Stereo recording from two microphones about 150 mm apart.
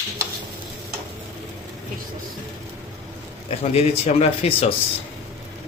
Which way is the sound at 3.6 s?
45° left (ahead or behind).